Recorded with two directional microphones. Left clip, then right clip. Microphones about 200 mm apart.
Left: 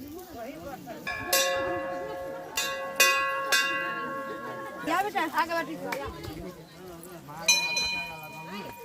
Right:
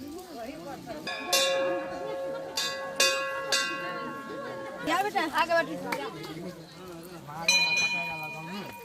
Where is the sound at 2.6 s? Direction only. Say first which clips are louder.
Left 3 dB; 30° left (ahead or behind).